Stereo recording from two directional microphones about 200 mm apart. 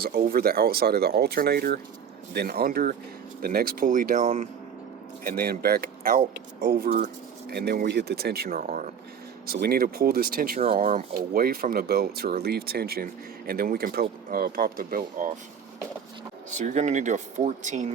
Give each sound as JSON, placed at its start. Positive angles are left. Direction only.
{"t": 0.0, "sound": "speech", "side_deg": -45}
{"t": 5.2, "sound": "speech", "side_deg": -50}
{"t": 16.5, "sound": "speech", "side_deg": -35}